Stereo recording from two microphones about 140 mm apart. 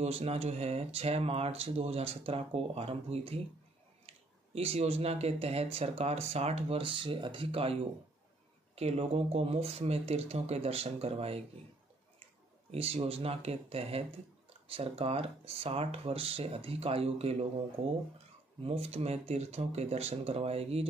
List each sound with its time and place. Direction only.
0.0 s speech: 50° right (ahead or behind)
4.6 s speech: 45° right (ahead or behind)
8.7 s speech: 45° right (ahead or behind)
12.7 s speech: 45° right (ahead or behind)
18.6 s speech: 50° right (ahead or behind)